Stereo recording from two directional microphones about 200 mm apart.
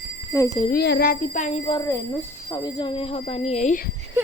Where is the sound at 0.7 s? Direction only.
50° left (ahead or behind); by 1.8 s 30° left (ahead or behind).